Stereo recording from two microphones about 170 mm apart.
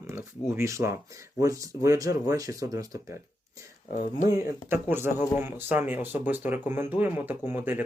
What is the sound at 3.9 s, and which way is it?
Speech, 50° left (ahead or behind).